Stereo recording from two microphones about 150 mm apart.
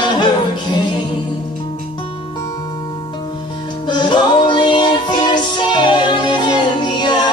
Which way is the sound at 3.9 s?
30° left (ahead or behind).